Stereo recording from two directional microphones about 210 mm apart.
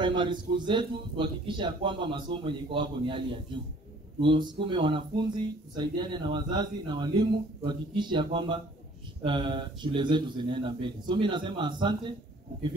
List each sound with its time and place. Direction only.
0.0 s speech: 20° right (ahead or behind)